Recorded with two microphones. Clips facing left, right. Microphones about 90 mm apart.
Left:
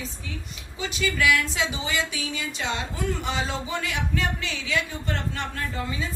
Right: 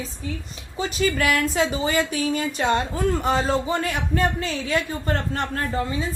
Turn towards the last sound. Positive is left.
turn(degrees=-40)  # may be behind; listen again after turning